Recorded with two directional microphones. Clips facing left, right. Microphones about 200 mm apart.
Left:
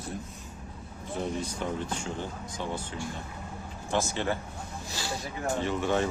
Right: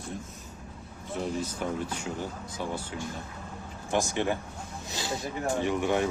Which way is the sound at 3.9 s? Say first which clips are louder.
Right 2 dB; 15° right (ahead or behind).